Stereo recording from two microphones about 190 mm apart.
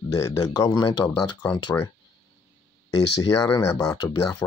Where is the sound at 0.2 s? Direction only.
20° left (ahead or behind).